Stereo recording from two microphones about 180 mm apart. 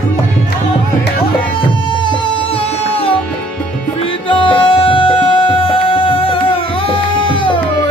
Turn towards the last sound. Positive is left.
turn(degrees=30)  # may be behind; listen again after turning